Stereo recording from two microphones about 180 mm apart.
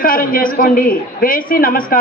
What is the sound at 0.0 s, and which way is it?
A man's voice, 50° left (ahead or behind).